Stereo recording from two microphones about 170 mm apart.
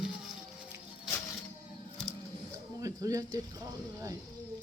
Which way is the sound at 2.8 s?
20° right (ahead or behind).